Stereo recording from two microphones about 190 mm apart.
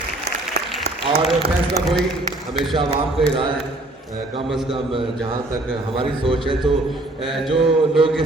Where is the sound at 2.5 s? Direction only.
Centre (ahead or behind).